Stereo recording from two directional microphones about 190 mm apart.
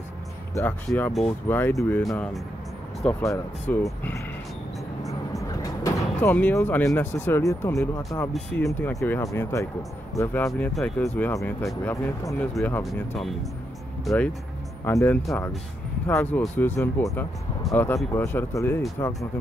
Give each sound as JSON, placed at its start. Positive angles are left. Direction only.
{"t": 0.6, "sound": "speech", "side_deg": 10}
{"t": 5.3, "sound": "speech", "side_deg": 15}